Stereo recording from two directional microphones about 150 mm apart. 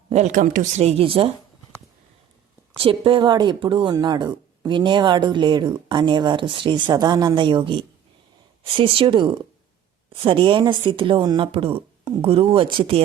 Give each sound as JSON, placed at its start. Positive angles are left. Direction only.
{"t": 0.1, "sound": "speech", "side_deg": -55}
{"t": 2.7, "sound": "speech", "side_deg": -35}